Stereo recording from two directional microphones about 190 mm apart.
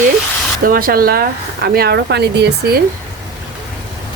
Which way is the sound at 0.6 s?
50° right (ahead or behind).